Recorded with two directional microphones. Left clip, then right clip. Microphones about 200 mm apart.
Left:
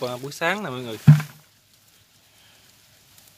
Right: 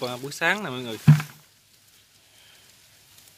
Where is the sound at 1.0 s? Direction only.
45° left (ahead or behind).